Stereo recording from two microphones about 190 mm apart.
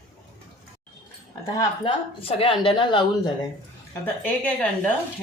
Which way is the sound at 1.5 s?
25° left (ahead or behind).